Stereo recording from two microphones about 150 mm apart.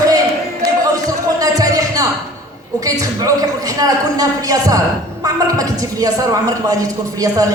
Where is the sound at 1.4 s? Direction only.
25° right (ahead or behind).